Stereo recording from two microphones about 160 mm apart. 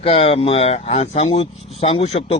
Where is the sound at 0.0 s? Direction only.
40° left (ahead or behind).